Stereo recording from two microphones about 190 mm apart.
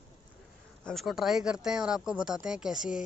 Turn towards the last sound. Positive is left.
turn(degrees=-5)  # may be behind; listen again after turning